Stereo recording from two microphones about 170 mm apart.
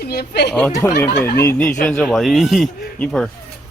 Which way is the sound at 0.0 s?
70° left (ahead or behind).